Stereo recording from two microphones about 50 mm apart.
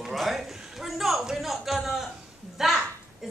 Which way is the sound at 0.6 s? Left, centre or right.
Centre.